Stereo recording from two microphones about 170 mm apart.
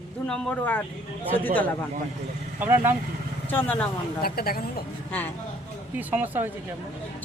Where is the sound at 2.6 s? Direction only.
10° right (ahead or behind).